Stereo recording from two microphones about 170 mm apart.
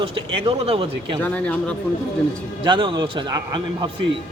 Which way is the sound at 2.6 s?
30° right (ahead or behind).